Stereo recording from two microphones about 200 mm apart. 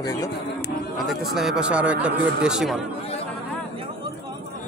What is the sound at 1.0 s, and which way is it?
Speech, centre (ahead or behind).